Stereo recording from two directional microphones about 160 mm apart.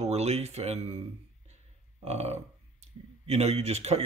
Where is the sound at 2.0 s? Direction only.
40° right (ahead or behind).